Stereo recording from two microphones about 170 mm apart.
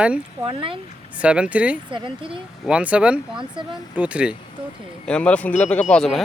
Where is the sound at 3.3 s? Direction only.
25° right (ahead or behind).